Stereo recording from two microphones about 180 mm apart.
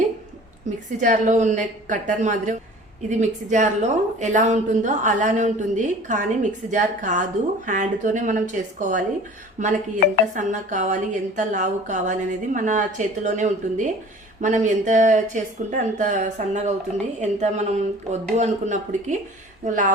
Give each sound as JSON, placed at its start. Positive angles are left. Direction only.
{"t": 0.9, "sound": "a woman's voice", "side_deg": -45}